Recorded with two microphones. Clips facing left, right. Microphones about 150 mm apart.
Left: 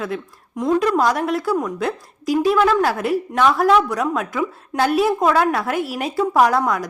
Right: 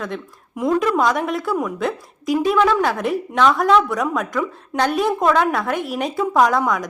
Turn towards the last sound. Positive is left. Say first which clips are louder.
# even
turn(degrees=0)  # may be behind; listen again after turning